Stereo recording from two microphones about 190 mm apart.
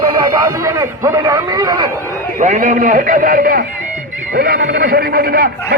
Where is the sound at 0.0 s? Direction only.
20° right (ahead or behind).